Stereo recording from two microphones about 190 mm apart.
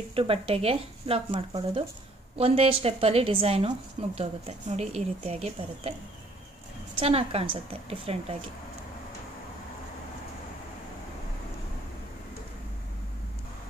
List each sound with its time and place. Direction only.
0.1 s a woman's voice: 30° right (ahead or behind)
7.0 s speech: 30° right (ahead or behind)